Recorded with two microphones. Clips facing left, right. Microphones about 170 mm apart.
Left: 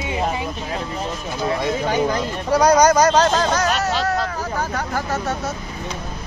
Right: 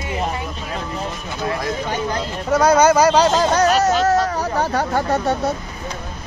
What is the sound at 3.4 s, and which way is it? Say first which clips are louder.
Speech: right 4 dB; 35° right (ahead or behind).